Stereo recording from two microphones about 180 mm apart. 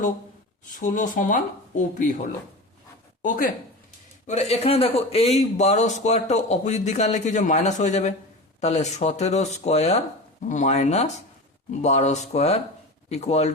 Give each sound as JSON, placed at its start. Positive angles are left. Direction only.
{"t": 0.8, "sound": "speech", "side_deg": 45}
{"t": 3.2, "sound": "speech", "side_deg": 45}
{"t": 4.3, "sound": "speech", "side_deg": 35}